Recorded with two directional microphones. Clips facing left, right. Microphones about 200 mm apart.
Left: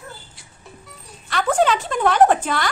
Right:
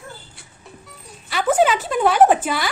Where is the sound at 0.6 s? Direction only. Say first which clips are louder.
Even; 5° right (ahead or behind).